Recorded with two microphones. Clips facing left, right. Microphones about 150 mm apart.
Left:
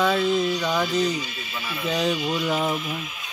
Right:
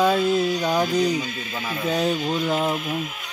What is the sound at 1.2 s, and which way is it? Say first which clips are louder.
Speech: right 4 dB; 45° right (ahead or behind).